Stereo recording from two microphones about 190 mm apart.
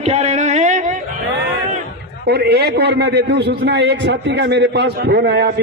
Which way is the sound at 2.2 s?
55° right (ahead or behind).